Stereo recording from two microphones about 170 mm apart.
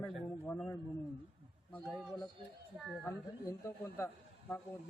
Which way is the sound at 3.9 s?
10° left (ahead or behind).